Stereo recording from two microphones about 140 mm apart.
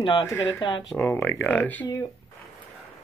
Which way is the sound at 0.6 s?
35° left (ahead or behind).